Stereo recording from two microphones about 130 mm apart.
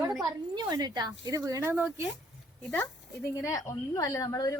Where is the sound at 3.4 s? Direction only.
25° left (ahead or behind).